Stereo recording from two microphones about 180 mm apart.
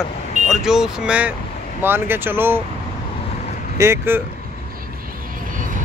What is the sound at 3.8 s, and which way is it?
Speech, 15° right (ahead or behind).